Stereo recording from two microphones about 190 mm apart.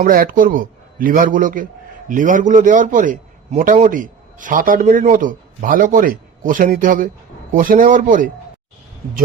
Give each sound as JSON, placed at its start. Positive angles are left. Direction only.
{"t": 0.0, "sound": "a man's voice", "side_deg": -50}